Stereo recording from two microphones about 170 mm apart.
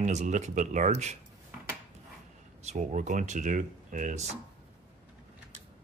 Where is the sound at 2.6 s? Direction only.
45° right (ahead or behind).